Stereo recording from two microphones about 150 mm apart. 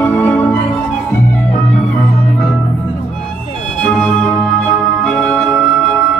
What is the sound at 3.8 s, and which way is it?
Music, 5° left (ahead or behind).